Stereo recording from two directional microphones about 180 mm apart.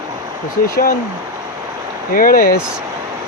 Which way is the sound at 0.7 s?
50° left (ahead or behind).